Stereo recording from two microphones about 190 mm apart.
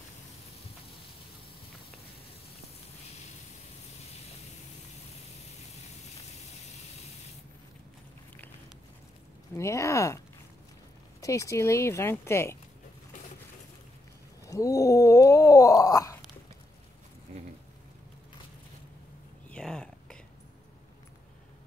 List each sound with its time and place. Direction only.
9.6 s speech: 15° left (ahead or behind)
14.4 s cat: 15° left (ahead or behind)
19.5 s a sound: 5° left (ahead or behind)